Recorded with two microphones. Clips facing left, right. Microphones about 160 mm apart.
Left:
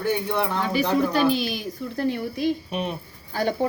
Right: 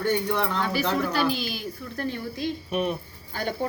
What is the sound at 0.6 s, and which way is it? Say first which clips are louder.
Speech: left 3 dB; 15° left (ahead or behind).